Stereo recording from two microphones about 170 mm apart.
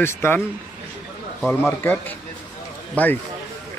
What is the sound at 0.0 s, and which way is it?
Speech, 15° left (ahead or behind).